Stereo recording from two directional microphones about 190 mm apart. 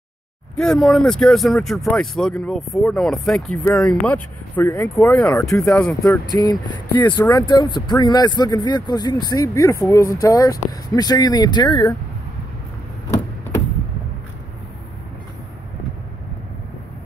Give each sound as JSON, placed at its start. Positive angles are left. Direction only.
{"t": 0.6, "sound": "speech", "side_deg": 0}
{"t": 5.7, "sound": "speech", "side_deg": 5}
{"t": 6.2, "sound": "speech", "side_deg": 20}